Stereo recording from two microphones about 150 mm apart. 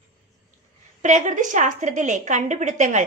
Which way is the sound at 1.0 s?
55° right (ahead or behind).